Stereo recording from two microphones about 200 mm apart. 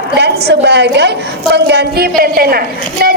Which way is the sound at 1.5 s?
55° right (ahead or behind).